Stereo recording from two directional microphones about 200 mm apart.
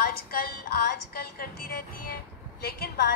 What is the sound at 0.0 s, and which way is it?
A woman's voice, 50° left (ahead or behind).